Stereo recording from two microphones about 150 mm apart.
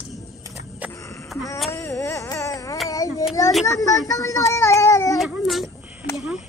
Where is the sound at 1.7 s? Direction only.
20° left (ahead or behind).